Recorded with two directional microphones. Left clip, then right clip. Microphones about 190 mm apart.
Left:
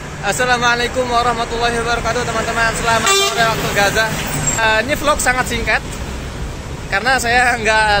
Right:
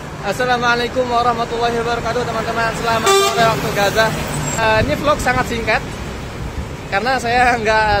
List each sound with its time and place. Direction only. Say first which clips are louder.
0.2 s speech: left 2 dB; centre (ahead or behind)
3.1 s speech: right 4 dB; 55° right (ahead or behind)
3.3 s speech: even; centre (ahead or behind)
6.9 s speech: left 2 dB; 5° right (ahead or behind)